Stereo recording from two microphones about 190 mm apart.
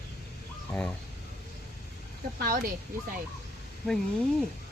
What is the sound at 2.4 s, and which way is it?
Speech, 50° right (ahead or behind).